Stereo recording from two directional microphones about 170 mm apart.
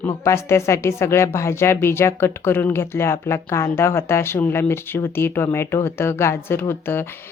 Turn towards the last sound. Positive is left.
turn(degrees=15)  # may be behind; listen again after turning